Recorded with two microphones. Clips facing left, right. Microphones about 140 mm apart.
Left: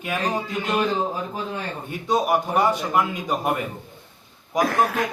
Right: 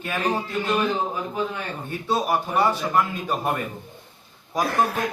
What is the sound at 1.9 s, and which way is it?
Speech, 15° left (ahead or behind).